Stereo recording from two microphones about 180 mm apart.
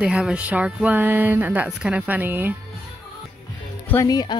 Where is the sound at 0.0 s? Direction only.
5° right (ahead or behind).